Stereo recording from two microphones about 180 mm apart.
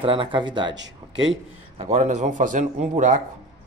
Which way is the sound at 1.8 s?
40° right (ahead or behind).